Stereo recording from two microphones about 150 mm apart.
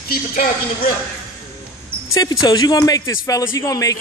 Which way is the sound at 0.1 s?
85° left.